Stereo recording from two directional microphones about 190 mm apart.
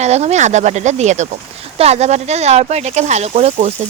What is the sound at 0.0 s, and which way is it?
Speech, 35° right (ahead or behind).